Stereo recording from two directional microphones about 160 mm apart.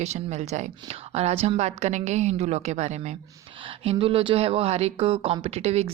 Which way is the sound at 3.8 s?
35° right (ahead or behind).